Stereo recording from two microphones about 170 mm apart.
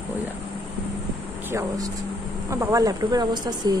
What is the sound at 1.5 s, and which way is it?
Speech, 15° right (ahead or behind).